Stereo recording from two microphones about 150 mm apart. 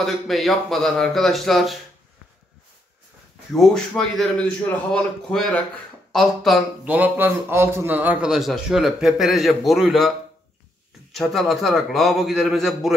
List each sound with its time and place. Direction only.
0.0 s a man's voice: centre (ahead or behind)
3.5 s a man's voice: centre (ahead or behind)
6.9 s a man's voice: 10° right (ahead or behind)